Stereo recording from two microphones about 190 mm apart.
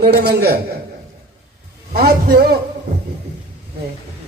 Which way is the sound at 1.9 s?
55° right (ahead or behind).